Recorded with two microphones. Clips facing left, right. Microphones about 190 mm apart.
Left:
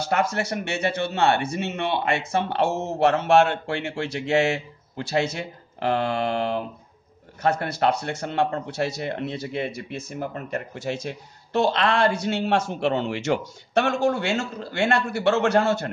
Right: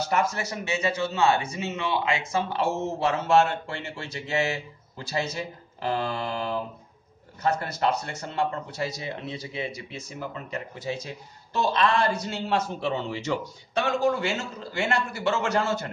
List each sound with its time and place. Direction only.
0.1 s a man's voice: 65° left (ahead or behind)